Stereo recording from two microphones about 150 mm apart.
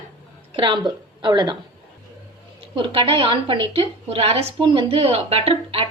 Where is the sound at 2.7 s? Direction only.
35° right (ahead or behind).